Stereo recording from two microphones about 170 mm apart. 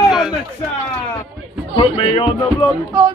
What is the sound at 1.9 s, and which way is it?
Speech, 35° left (ahead or behind).